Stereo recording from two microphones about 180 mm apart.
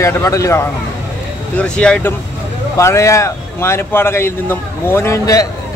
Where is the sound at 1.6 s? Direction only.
5° left (ahead or behind).